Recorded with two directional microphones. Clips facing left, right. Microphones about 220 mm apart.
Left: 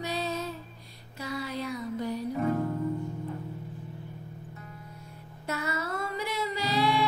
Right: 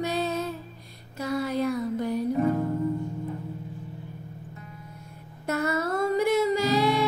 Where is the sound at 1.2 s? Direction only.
50° right (ahead or behind).